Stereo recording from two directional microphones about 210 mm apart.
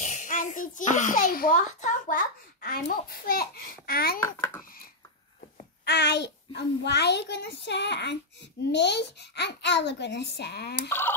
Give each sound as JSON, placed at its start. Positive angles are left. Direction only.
{"t": 0.0, "sound": "a child's voice", "side_deg": 35}
{"t": 4.2, "sound": "a child's voice", "side_deg": 10}
{"t": 5.9, "sound": "a child's voice", "side_deg": 55}
{"t": 10.9, "sound": "speech", "side_deg": 10}